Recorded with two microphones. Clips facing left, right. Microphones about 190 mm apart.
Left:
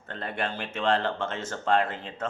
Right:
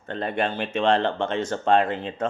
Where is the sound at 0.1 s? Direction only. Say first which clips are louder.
Right 6 dB; 20° right (ahead or behind).